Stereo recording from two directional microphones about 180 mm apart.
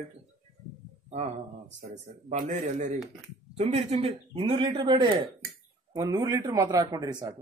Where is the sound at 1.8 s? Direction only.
45° right (ahead or behind).